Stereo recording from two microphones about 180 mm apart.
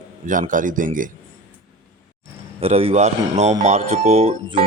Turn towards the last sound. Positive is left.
turn(degrees=-35)  # may be behind; listen again after turning